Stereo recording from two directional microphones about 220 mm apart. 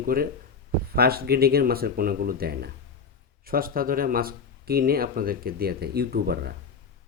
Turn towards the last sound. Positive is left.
turn(degrees=-45)  # may be behind; listen again after turning